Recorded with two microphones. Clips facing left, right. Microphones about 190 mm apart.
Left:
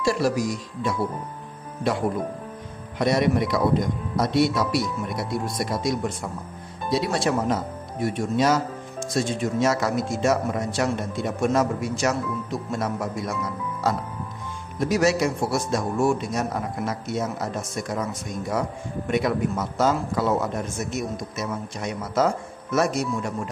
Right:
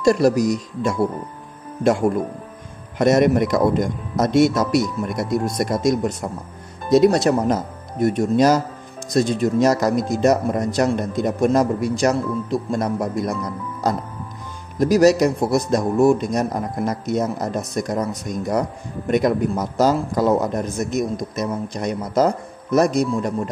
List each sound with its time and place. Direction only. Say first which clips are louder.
0.0 s a man's voice: right 7 dB; 40° right (ahead or behind)
3.0 s a man's voice: right 6 dB; 50° right (ahead or behind)
14.8 s a man's voice: right 7 dB; 40° right (ahead or behind)